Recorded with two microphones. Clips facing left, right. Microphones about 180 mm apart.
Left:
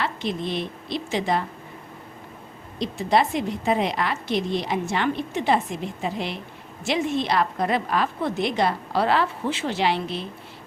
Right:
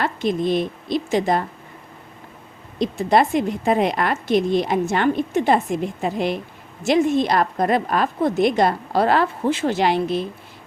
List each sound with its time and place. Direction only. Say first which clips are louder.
0.0 s a woman's voice: right 6 dB; 45° right (ahead or behind)
2.7 s a woman's voice: right 4 dB; 50° right (ahead or behind)